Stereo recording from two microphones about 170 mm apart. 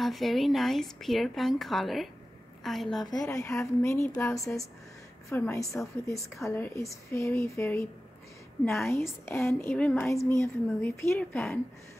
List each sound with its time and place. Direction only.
0.0 s speech: centre (ahead or behind)
3.3 s a woman's voice: 20° left (ahead or behind)
8.8 s a woman's voice: 15° left (ahead or behind)